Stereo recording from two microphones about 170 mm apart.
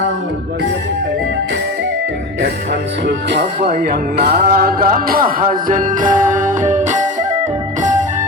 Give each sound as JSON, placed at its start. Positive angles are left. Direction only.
{"t": 3.1, "sound": "speech", "side_deg": -90}
{"t": 3.7, "sound": "music", "side_deg": -60}